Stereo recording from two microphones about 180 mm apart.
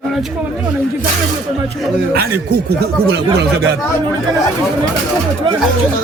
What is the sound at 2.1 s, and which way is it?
Speech, 65° right (ahead or behind).